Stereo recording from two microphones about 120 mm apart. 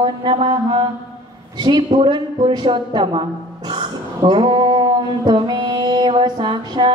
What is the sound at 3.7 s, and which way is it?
Mantra, 40° right (ahead or behind).